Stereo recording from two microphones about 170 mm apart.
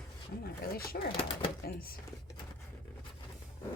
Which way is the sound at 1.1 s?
30° left (ahead or behind).